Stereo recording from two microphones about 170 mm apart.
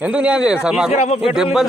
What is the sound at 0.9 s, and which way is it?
Speech, 40° left (ahead or behind).